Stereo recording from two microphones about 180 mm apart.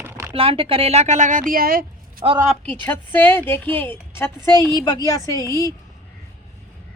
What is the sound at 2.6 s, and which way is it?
A woman's voice, 10° left (ahead or behind).